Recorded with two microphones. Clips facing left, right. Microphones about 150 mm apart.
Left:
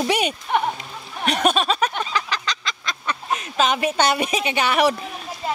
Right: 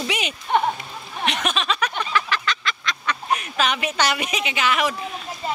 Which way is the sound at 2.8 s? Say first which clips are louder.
Right 1 dB; 25° left (ahead or behind).